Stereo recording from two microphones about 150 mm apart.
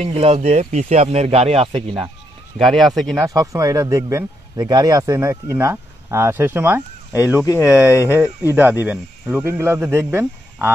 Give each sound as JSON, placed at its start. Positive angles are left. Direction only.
{"t": 0.0, "sound": "speech", "side_deg": -45}
{"t": 2.6, "sound": "speech", "side_deg": 0}
{"t": 3.2, "sound": "speech", "side_deg": -20}
{"t": 7.4, "sound": "speech", "side_deg": 20}
{"t": 8.0, "sound": "speech", "side_deg": -10}